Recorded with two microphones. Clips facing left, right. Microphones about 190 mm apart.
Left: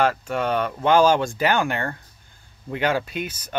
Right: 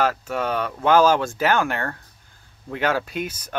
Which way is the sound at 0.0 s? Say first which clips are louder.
Left 1 dB; 5° right (ahead or behind).